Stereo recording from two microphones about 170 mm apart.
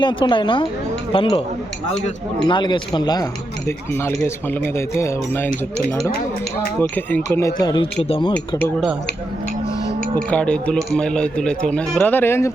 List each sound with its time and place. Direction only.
0.0 s speech: 30° left (ahead or behind)
2.5 s speech: 25° left (ahead or behind)
3.7 s speech: 15° left (ahead or behind)
7.3 s speech: 20° left (ahead or behind)
8.3 s speech: 10° left (ahead or behind)
10.2 s speech: 5° left (ahead or behind)